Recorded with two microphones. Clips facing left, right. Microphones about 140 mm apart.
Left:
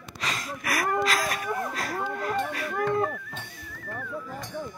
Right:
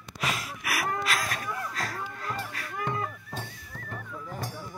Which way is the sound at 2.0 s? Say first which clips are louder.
Left 7 dB; 65° left (ahead or behind).